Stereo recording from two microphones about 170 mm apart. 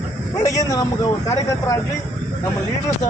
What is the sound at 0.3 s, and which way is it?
A man's voice, 20° left (ahead or behind).